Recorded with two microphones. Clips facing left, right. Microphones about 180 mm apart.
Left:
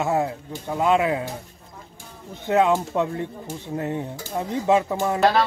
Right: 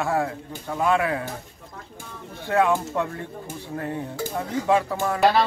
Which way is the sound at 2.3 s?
20° left (ahead or behind).